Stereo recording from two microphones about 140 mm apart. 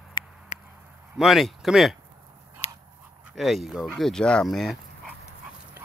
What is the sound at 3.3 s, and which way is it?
Speech, centre (ahead or behind).